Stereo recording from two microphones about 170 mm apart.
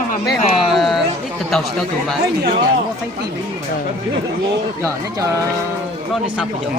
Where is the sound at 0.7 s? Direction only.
Centre (ahead or behind).